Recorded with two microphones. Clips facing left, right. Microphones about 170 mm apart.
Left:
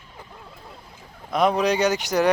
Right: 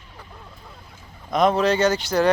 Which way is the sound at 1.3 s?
10° left (ahead or behind).